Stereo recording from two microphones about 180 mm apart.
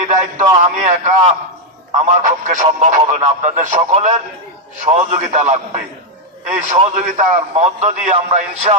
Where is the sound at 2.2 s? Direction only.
45° right (ahead or behind).